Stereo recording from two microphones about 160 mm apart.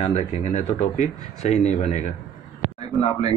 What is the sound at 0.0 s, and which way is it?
Speech, 45° left (ahead or behind).